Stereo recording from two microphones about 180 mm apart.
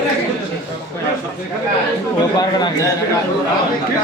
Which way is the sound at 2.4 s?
25° left (ahead or behind).